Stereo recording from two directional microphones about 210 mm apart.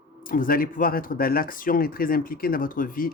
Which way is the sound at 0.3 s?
40° left (ahead or behind).